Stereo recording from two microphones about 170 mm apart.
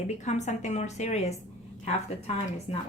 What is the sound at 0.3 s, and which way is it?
Speech, 45° left (ahead or behind).